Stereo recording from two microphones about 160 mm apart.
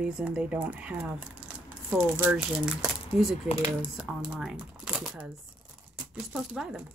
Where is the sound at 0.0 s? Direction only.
5° right (ahead or behind).